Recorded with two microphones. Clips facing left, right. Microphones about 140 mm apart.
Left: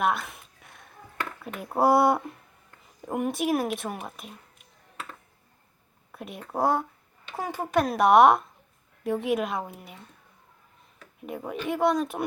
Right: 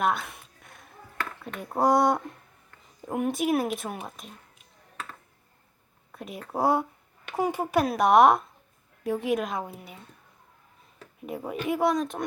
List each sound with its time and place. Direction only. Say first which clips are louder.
0.0 s a sound: even; centre (ahead or behind)
1.4 s speech: left 2 dB; 5° left (ahead or behind)
6.1 s speech: right 1 dB; centre (ahead or behind)
11.2 s speech: right 1 dB; centre (ahead or behind)